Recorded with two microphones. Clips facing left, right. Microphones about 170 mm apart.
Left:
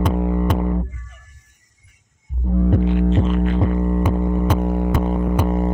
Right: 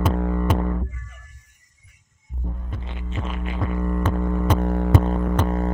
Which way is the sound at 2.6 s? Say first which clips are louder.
Left 19 dB; 70° left (ahead or behind).